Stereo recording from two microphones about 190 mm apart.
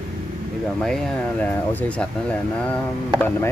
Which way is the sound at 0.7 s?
Centre (ahead or behind).